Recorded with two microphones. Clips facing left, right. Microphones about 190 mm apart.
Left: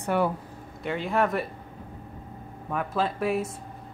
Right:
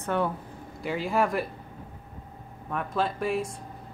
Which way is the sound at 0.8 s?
Centre (ahead or behind).